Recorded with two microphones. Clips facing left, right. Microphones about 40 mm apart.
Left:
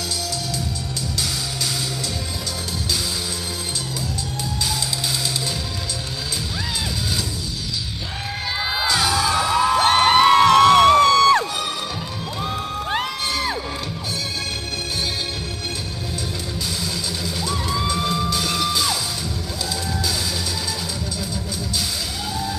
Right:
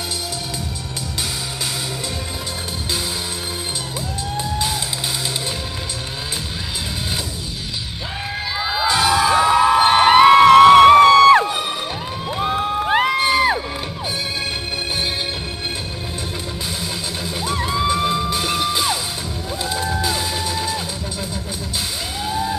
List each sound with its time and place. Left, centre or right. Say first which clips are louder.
8.5 s children shouting: right 2 dB; centre
8.8 s music: right 5 dB; right
12.4 s cheering: right 7 dB; right
17.2 s music: right 5 dB; right
22.3 s music: right 6 dB; right